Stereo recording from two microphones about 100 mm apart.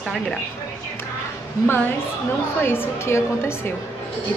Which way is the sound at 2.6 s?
25° left (ahead or behind).